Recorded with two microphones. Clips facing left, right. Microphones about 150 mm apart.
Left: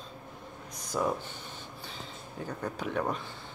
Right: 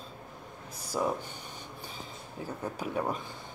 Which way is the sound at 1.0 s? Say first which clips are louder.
Even; 15° right (ahead or behind).